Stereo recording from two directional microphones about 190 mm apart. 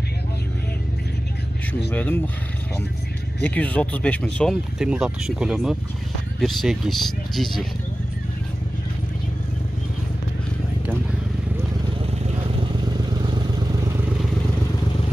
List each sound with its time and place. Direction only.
1.9 s speech: 10° left (ahead or behind)
3.4 s speech: 5° left (ahead or behind)
12.9 s vehicle: 25° right (ahead or behind)